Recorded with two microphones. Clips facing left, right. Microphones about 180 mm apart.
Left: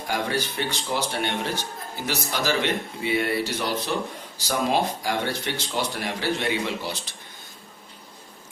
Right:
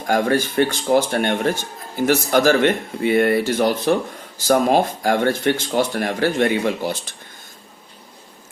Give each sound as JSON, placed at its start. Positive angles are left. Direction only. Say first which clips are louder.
{"t": 0.1, "sound": "speech", "louder": "right 9 dB", "side_deg": -50}